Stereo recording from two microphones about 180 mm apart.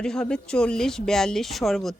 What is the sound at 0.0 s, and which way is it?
Speech, 5° left (ahead or behind).